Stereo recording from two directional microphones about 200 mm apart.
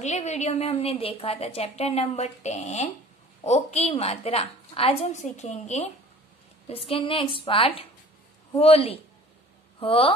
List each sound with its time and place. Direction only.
0.0 s a woman's voice: 35° left (ahead or behind)